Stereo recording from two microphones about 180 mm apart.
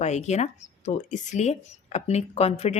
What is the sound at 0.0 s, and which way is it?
Speech, 40° left (ahead or behind).